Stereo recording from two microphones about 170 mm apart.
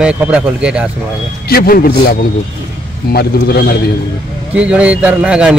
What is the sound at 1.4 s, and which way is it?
Speech, 60° left (ahead or behind).